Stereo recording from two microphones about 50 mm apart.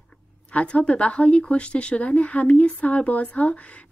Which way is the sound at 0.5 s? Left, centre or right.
Left.